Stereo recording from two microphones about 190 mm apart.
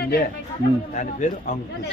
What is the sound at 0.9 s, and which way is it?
Speech, 40° left (ahead or behind).